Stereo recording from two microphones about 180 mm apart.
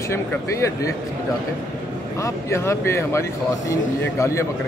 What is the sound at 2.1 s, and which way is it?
A man's voice, 15° left (ahead or behind).